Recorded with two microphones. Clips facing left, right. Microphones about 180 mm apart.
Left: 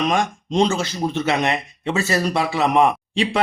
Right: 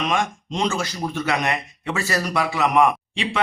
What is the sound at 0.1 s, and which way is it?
Speech, 30° left (ahead or behind).